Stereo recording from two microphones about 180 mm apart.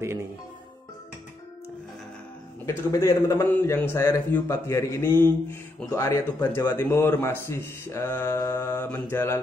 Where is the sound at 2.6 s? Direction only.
15° left (ahead or behind).